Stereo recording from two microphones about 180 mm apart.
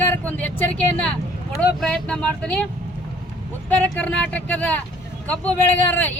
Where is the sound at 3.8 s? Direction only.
5° left (ahead or behind).